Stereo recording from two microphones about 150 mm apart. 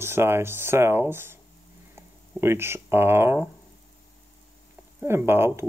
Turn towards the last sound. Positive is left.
turn(degrees=-15)  # may be behind; listen again after turning